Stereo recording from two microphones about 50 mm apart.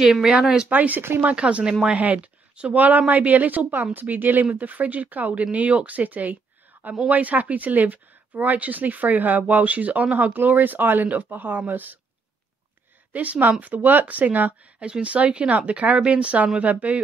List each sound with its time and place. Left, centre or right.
0.0 s speech: centre
0.7 s speech: right
1.3 s speech: right
13.1 s speech: right
14.8 s speech: right